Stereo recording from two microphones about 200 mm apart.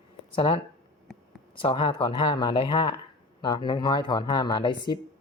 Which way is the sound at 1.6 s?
25° left (ahead or behind).